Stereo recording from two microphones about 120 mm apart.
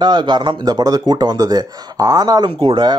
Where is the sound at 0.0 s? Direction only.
35° right (ahead or behind).